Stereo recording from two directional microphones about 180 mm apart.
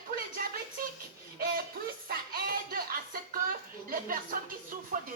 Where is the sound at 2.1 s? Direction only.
55° right (ahead or behind).